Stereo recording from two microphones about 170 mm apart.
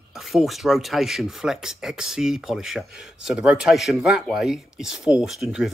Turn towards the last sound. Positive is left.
turn(degrees=0)  # may be behind; listen again after turning